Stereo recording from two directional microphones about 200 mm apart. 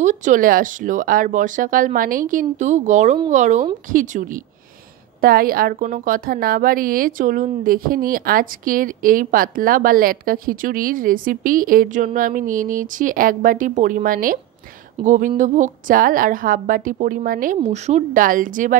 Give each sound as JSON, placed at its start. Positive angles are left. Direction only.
{"t": 0.0, "sound": "a woman's voice", "side_deg": -35}